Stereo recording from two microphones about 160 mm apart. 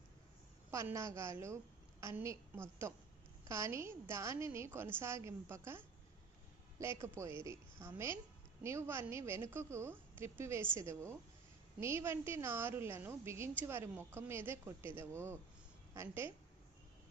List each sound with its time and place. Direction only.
0.7 s a woman's voice: 20° right (ahead or behind)
3.5 s a woman's voice: 15° right (ahead or behind)
7.4 s a woman's voice: 15° right (ahead or behind)